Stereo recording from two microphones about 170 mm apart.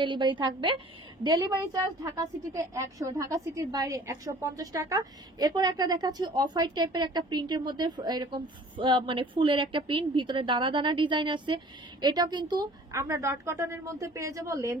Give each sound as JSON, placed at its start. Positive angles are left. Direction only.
{"t": 0.0, "sound": "a woman's voice", "side_deg": -25}